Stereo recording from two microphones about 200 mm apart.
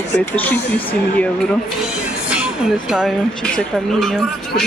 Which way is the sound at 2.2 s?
5° right (ahead or behind).